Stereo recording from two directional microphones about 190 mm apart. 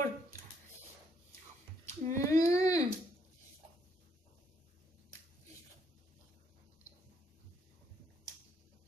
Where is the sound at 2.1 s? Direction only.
15° left (ahead or behind).